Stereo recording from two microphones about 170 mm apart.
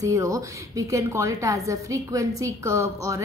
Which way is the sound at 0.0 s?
20° right (ahead or behind).